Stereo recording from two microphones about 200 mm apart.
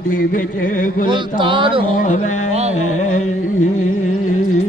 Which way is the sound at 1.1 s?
25° right (ahead or behind).